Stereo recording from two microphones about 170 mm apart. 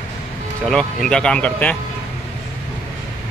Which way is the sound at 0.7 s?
5° left (ahead or behind).